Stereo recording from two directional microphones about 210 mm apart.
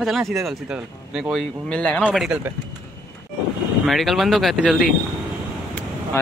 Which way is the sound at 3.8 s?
Centre (ahead or behind).